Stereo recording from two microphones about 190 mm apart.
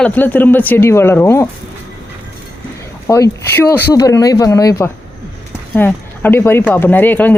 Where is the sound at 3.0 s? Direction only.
10° left (ahead or behind).